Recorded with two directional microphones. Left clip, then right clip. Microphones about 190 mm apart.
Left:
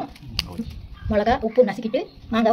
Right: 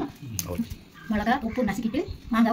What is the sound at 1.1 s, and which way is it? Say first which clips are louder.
A woman's voice: left 8 dB; 50° left (ahead or behind).